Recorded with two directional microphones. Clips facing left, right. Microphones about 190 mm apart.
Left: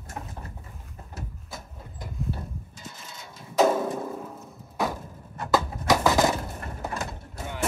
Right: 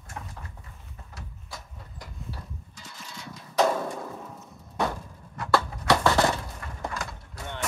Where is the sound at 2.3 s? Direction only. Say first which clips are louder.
Left 7 dB; 25° left (ahead or behind).